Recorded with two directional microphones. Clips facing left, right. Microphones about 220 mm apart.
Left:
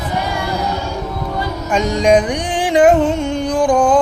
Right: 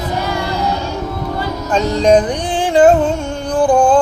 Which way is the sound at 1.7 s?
10° left (ahead or behind).